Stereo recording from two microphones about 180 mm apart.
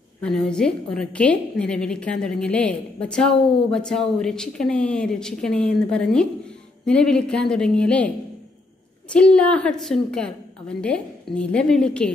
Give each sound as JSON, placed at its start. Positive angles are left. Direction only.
{"t": 0.2, "sound": "a woman's voice", "side_deg": 5}
{"t": 9.1, "sound": "a woman's voice", "side_deg": 5}